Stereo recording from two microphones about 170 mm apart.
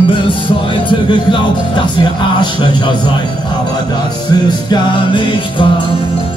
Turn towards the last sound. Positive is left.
turn(degrees=30)  # may be behind; listen again after turning